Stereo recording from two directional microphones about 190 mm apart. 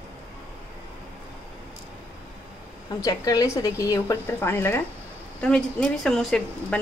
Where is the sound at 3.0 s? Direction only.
20° left (ahead or behind).